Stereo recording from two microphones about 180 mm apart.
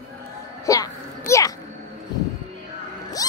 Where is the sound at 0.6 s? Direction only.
20° left (ahead or behind).